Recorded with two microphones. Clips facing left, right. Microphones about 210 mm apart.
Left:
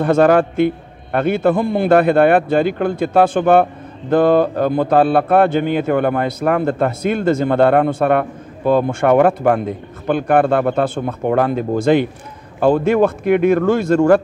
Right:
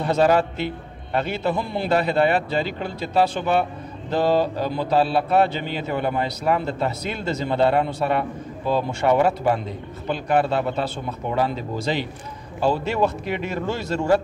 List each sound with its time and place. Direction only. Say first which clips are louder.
0.0 s speech: left 6 dB; 55° left (ahead or behind)